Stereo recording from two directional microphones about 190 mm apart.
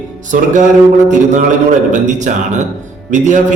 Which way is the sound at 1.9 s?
40° right (ahead or behind).